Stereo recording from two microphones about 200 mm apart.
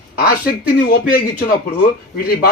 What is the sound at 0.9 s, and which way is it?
Speech, 45° left (ahead or behind).